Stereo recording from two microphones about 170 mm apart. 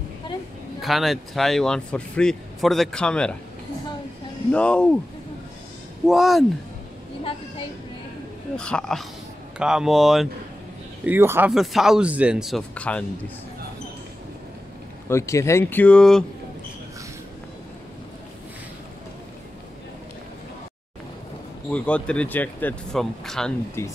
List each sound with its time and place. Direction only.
0.7 s speech: centre (ahead or behind)
4.5 s speech: 5° left (ahead or behind)
6.0 s speech: centre (ahead or behind)
8.5 s speech: 5° left (ahead or behind)
11.1 s speech: 15° right (ahead or behind)
11.5 s speech: centre (ahead or behind)
15.0 s speech: 15° left (ahead or behind)
21.6 s speech: 5° left (ahead or behind)
23.8 s speech: 15° left (ahead or behind)